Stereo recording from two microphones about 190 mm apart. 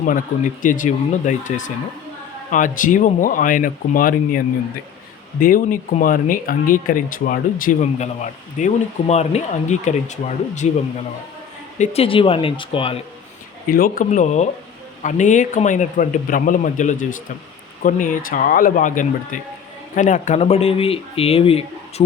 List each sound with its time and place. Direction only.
0.6 s a man's voice: 45° left (ahead or behind)
11.8 s speech: 30° left (ahead or behind)
13.7 s a man's voice: 50° left (ahead or behind); by 22.0 s 30° left (ahead or behind)